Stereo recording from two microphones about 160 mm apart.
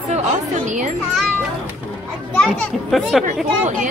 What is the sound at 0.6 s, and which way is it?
Speech, 50° right (ahead or behind).